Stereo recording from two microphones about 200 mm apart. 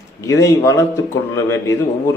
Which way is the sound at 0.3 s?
15° left (ahead or behind).